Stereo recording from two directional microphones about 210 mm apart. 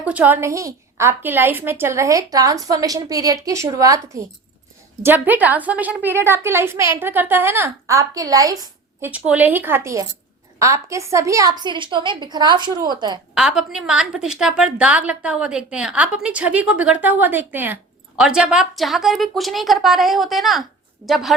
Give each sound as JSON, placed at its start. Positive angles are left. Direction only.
{"t": 0.0, "sound": "a woman's voice", "side_deg": -5}
{"t": 13.3, "sound": "a woman's voice", "side_deg": 0}